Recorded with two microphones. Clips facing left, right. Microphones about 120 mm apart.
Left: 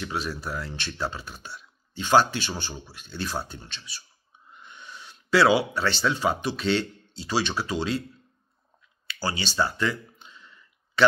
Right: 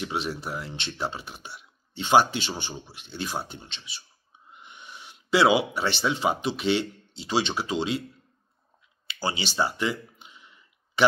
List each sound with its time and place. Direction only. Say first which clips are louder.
0.0 s speech: right 1 dB; 20° right (ahead or behind)
9.0 s clicking: even; 20° right (ahead or behind)